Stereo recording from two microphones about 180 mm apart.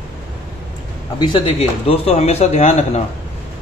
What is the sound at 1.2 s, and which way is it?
Speech, 30° left (ahead or behind).